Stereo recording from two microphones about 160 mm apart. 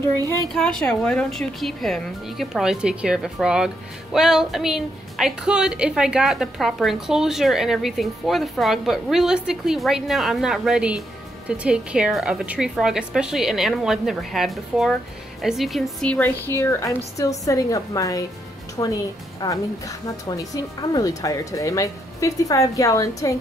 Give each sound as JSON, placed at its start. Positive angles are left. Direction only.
{"t": 0.5, "sound": "a woman's voice", "side_deg": 5}